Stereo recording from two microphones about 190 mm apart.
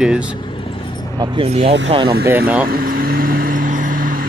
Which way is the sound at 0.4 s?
25° left (ahead or behind).